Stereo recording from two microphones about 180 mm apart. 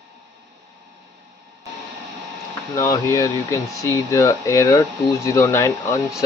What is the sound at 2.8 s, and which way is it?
Speech, 20° left (ahead or behind).